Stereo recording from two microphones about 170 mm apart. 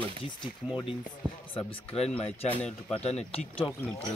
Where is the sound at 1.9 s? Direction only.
35° left (ahead or behind).